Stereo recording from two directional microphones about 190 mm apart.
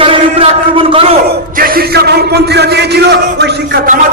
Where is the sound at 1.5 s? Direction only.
50° right (ahead or behind).